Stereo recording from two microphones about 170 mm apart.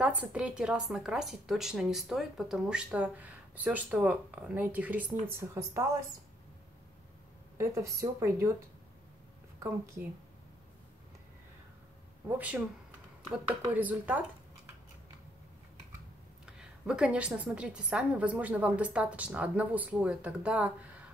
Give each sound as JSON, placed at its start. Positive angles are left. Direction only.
{"t": 0.0, "sound": "speech", "side_deg": -5}
{"t": 7.5, "sound": "a woman's voice", "side_deg": -15}
{"t": 12.3, "sound": "a woman's voice", "side_deg": -10}
{"t": 13.7, "sound": "a woman's voice", "side_deg": -10}
{"t": 16.5, "sound": "a woman's voice", "side_deg": -5}